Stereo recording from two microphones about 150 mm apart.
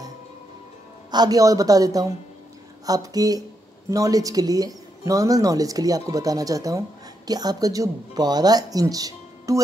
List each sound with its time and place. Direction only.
1.1 s speech: 25° right (ahead or behind)